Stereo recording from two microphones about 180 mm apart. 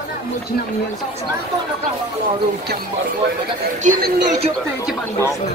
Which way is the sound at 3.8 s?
45° right (ahead or behind).